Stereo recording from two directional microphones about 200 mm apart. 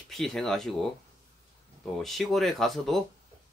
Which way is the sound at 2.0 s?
Centre (ahead or behind).